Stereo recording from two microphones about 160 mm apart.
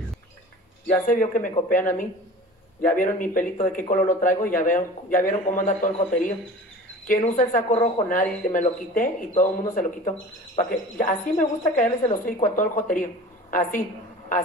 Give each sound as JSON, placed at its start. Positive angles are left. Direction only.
{"t": 0.8, "sound": "speech", "side_deg": 55}